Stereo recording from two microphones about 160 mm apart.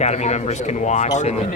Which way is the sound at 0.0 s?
45° left (ahead or behind).